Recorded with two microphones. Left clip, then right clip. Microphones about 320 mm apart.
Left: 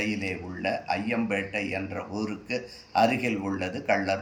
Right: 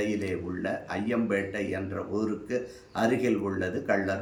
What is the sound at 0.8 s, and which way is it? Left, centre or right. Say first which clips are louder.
Speech: left 2 dB; right.